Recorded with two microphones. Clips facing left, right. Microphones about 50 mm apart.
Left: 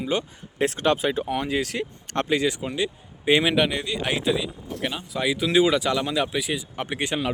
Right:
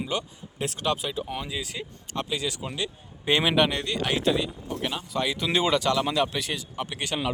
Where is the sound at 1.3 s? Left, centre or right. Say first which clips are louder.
Left 8 dB; left.